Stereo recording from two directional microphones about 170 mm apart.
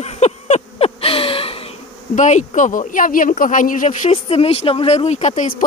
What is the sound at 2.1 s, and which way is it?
Speech, 45° left (ahead or behind).